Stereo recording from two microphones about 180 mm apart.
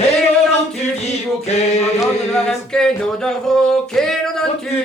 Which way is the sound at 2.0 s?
Centre (ahead or behind).